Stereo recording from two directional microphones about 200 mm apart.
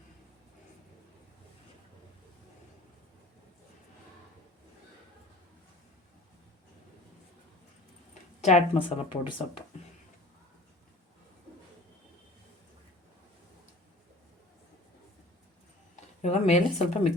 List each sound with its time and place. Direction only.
8.4 s speech: 35° left (ahead or behind)
16.2 s speech: 35° left (ahead or behind)